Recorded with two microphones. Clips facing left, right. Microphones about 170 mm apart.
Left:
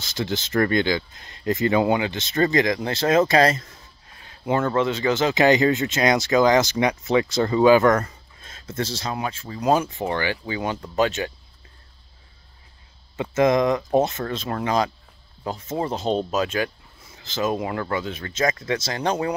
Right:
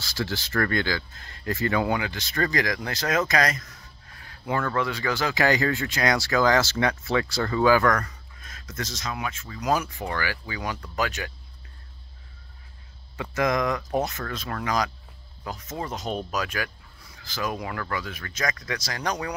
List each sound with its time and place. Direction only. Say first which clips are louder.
0.0 s speech: left 3 dB; 20° left (ahead or behind)
13.1 s speech: left 6 dB; 25° left (ahead or behind)